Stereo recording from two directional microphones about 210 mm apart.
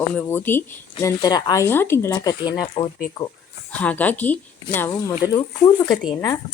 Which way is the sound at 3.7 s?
5° left (ahead or behind).